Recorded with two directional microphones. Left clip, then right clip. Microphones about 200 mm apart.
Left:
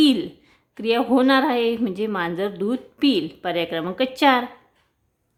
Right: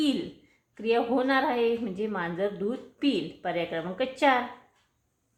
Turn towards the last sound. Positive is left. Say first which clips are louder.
# left 6 dB
turn(degrees=45)  # may be behind; listen again after turning